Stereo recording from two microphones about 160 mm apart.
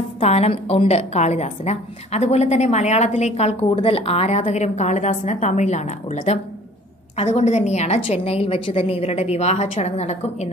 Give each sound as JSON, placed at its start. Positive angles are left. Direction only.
{"t": 0.2, "sound": "a woman's voice", "side_deg": 40}